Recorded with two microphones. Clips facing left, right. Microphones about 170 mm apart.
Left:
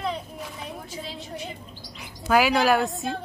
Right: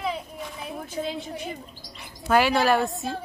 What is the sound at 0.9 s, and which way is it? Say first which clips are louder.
Speech: right 6 dB; 55° right (ahead or behind).